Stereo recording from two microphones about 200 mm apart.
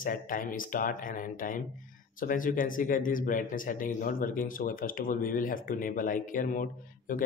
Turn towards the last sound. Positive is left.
turn(degrees=40)  # may be behind; listen again after turning